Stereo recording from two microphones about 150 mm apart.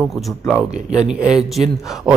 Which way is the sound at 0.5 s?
5° right (ahead or behind).